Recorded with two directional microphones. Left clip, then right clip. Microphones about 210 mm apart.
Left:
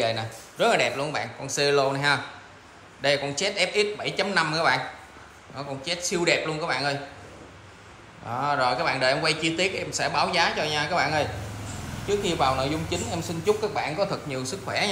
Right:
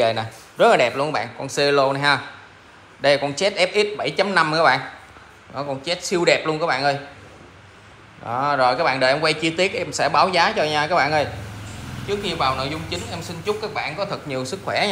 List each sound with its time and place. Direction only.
0.0 s a man's voice: 5° left (ahead or behind)
8.3 s a man's voice: 5° left (ahead or behind)
12.1 s a man's voice: 15° left (ahead or behind)
14.3 s a man's voice: 5° left (ahead or behind)